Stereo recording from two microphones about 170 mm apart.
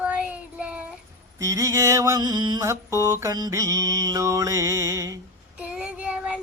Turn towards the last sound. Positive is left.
turn(degrees=-5)  # may be behind; listen again after turning